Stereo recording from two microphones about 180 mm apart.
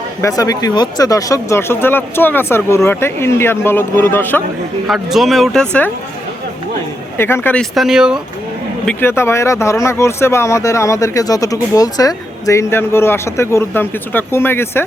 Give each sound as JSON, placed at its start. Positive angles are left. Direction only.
{"t": 0.2, "sound": "speech", "side_deg": 20}
{"t": 4.9, "sound": "speech", "side_deg": 0}
{"t": 7.2, "sound": "speech", "side_deg": 15}
{"t": 8.9, "sound": "speech", "side_deg": 10}